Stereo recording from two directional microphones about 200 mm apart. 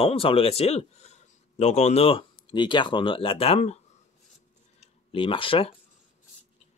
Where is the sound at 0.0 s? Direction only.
30° left (ahead or behind).